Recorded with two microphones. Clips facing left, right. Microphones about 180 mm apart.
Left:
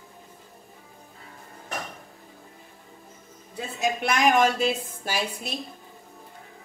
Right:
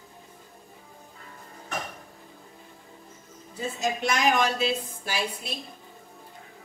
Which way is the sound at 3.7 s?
55° left (ahead or behind).